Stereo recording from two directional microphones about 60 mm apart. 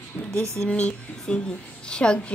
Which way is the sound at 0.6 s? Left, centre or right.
Left.